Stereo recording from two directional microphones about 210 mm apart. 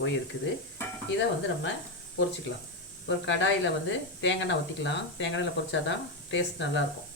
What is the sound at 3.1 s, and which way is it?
Speech, 60° left (ahead or behind).